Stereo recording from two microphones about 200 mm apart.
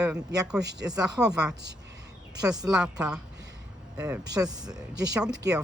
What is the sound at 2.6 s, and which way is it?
Speech, 5° right (ahead or behind).